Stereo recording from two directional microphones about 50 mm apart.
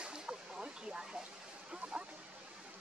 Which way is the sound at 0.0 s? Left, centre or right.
Centre.